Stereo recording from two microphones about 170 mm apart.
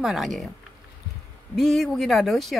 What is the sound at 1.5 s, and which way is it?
A woman's voice, centre (ahead or behind).